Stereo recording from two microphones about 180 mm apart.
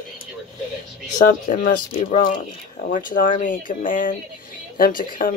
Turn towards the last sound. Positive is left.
turn(degrees=50)  # may be behind; listen again after turning